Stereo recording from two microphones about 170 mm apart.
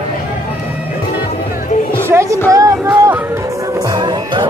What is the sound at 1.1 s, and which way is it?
Music, 55° left (ahead or behind).